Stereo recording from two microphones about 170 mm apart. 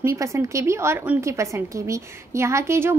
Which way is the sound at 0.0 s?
15° right (ahead or behind).